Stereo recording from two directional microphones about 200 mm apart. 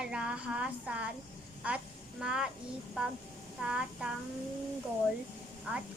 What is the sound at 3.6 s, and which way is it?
Speech, 5° right (ahead or behind).